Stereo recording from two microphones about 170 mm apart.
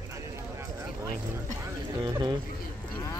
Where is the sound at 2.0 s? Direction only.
25° right (ahead or behind).